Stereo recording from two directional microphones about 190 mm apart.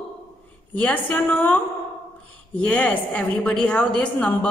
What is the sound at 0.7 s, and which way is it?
A woman's voice, 5° left (ahead or behind).